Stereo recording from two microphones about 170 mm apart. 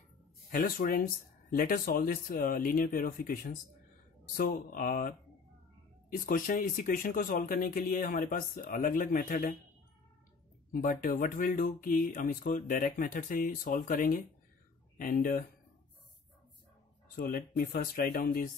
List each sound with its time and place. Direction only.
0.5 s speech: 55° left (ahead or behind)
10.7 s speech: 55° left (ahead or behind)
17.1 s speech: 55° left (ahead or behind)